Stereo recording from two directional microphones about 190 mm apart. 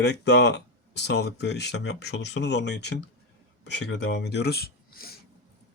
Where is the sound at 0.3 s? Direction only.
65° left (ahead or behind).